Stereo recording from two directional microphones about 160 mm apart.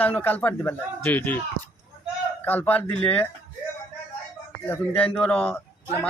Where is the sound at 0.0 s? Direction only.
10° left (ahead or behind).